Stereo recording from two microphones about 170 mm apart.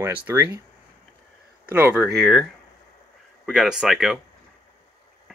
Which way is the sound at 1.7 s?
10° right (ahead or behind).